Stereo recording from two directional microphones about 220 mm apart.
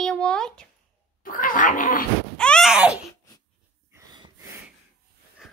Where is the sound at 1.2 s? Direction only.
40° left (ahead or behind).